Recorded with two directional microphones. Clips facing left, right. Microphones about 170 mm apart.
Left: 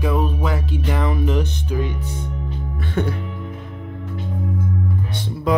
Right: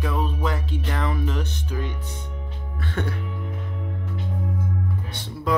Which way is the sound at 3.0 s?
10° left (ahead or behind).